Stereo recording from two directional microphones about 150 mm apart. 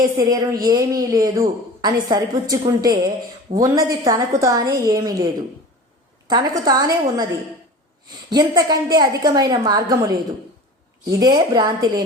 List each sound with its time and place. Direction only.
0.2 s a woman's voice: 30° right (ahead or behind)
8.3 s a woman's voice: 25° right (ahead or behind)
11.2 s a woman's voice: 30° right (ahead or behind)